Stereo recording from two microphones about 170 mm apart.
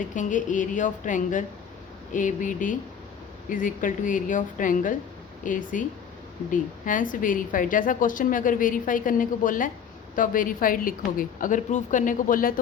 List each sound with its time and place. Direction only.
0.1 s a woman's voice: 50° left (ahead or behind)